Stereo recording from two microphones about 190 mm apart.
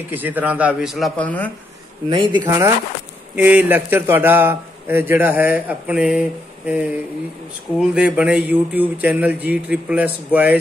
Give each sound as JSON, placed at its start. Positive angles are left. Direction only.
{"t": 0.1, "sound": "a man's voice", "side_deg": -10}
{"t": 2.0, "sound": "a man's voice", "side_deg": -25}
{"t": 7.9, "sound": "a man's voice", "side_deg": -5}